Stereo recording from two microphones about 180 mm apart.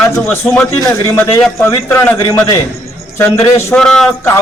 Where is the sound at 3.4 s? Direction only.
15° left (ahead or behind).